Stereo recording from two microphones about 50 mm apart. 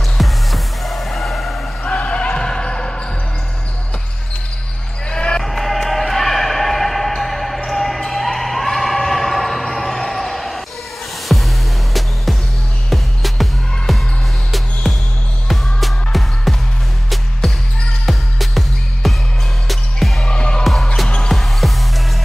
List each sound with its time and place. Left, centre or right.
0.2 s music: centre
1.8 s basketball bounce: left
5.1 s basketball bounce: centre
5.4 s a sound: centre
11.2 s music: centre
17.4 s basketball bounce: centre
18.0 s music: centre
20.2 s music: centre
20.6 s music: centre